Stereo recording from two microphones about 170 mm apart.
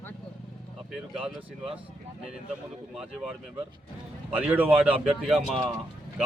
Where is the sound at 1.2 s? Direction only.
30° right (ahead or behind).